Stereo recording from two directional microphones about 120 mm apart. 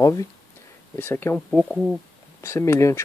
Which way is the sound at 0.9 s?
15° left (ahead or behind).